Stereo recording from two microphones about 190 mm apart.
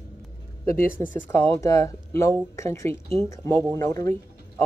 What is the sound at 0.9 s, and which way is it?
Speech, 10° left (ahead or behind).